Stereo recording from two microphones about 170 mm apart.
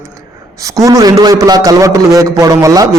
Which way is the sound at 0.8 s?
20° right (ahead or behind).